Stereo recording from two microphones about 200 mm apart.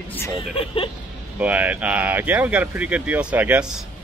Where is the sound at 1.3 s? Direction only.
5° right (ahead or behind).